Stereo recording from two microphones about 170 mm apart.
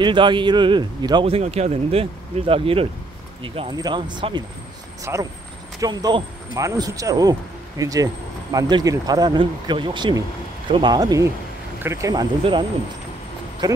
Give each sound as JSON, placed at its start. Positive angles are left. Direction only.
{"t": 0.0, "sound": "speech", "side_deg": -30}